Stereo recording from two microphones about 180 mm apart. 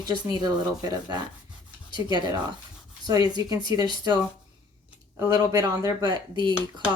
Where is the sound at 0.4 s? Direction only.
20° right (ahead or behind).